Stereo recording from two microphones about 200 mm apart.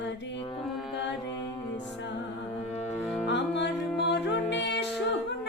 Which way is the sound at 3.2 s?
60° left (ahead or behind).